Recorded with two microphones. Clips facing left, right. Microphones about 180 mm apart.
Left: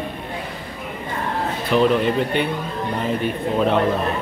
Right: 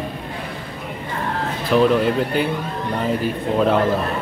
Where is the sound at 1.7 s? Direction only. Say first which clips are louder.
Right 2 dB; centre (ahead or behind).